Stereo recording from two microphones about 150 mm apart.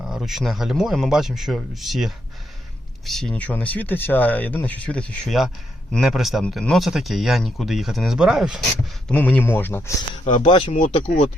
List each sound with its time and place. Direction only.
0.0 s speech: centre (ahead or behind)
9.0 s speech: 10° left (ahead or behind)
10.2 s speech: 55° left (ahead or behind)